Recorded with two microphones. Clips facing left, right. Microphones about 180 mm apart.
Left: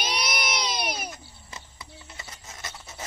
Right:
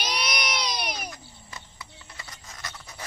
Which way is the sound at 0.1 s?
25° left (ahead or behind).